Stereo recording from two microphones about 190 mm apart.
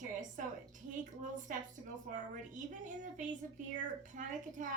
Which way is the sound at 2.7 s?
40° right (ahead or behind).